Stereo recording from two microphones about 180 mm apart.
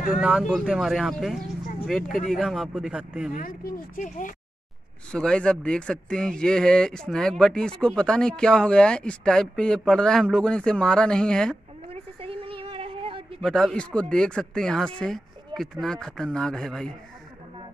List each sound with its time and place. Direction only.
0.2 s speech: centre (ahead or behind)
3.3 s speech: 50° left (ahead or behind)
5.1 s speech: 5° left (ahead or behind)
11.9 s a sound: 30° right (ahead or behind)
13.4 s speech: 5° left (ahead or behind)